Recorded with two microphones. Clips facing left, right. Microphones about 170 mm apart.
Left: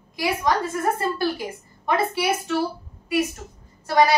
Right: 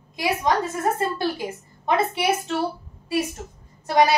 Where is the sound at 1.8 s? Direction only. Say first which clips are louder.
Right 1 dB; 20° right (ahead or behind).